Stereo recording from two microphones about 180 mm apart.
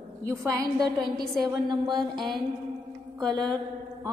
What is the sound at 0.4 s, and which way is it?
Speech, 20° right (ahead or behind).